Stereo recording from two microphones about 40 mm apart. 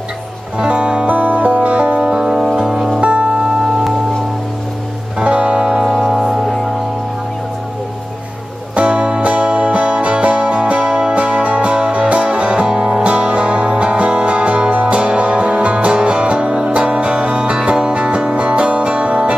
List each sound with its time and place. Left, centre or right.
0.6 s music: right
3.0 s music: right
5.2 s music: right; by 6.5 s centre
8.7 s music: right